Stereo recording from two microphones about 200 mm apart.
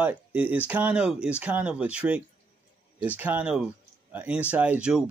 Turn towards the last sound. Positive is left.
turn(degrees=-5)  # may be behind; listen again after turning